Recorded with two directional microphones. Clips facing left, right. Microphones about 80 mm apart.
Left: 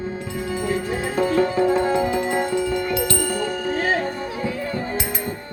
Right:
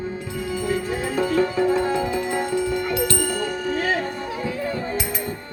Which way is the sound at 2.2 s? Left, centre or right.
Left.